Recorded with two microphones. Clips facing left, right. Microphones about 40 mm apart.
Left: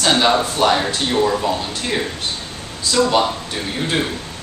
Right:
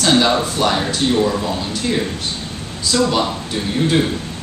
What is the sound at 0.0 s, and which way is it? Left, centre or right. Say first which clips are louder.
Speech: right 1 dB; centre.